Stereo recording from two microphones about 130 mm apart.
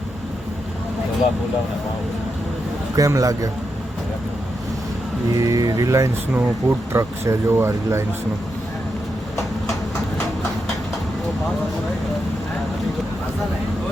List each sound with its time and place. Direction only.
2.9 s speech: 25° right (ahead or behind)
5.4 s speech: 30° right (ahead or behind)